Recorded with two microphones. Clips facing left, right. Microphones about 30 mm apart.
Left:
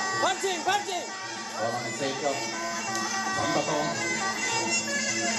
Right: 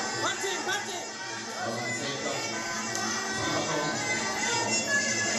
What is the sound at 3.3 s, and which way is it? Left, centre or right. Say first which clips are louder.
Music: left 5 dB; centre.